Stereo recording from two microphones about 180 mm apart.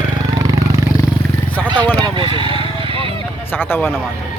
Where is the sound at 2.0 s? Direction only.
25° right (ahead or behind).